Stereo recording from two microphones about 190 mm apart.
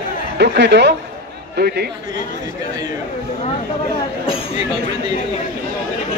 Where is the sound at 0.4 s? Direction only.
65° right (ahead or behind).